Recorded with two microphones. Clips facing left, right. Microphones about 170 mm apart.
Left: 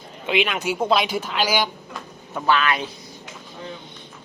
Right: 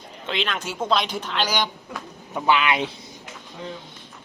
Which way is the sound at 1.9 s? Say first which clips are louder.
Right 1 dB; 15° right (ahead or behind).